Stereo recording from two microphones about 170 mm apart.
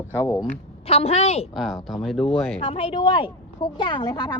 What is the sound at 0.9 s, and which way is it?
Speech, 35° left (ahead or behind).